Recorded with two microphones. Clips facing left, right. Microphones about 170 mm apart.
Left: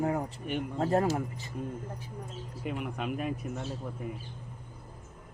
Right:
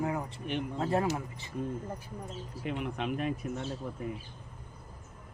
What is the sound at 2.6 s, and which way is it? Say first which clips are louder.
Speech: even; 5° left (ahead or behind).